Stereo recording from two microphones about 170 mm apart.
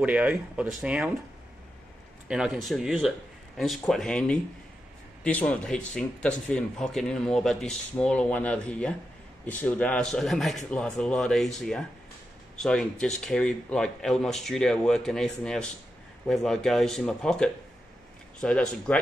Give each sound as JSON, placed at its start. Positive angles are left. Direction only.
{"t": 0.0, "sound": "speech", "side_deg": -10}
{"t": 2.2, "sound": "a man's voice", "side_deg": -5}